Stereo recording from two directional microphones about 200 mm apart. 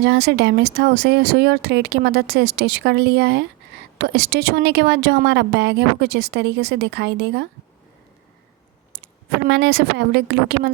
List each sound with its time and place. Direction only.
0.0 s a woman's voice: 55° right (ahead or behind)
9.5 s a woman's voice: 55° right (ahead or behind)